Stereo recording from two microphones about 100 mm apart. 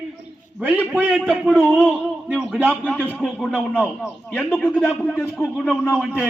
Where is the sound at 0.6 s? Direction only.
15° right (ahead or behind).